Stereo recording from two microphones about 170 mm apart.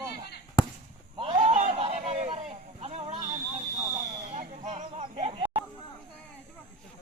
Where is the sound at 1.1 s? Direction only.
30° right (ahead or behind).